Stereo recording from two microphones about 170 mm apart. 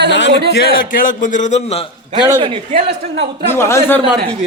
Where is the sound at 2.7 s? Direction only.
80° right.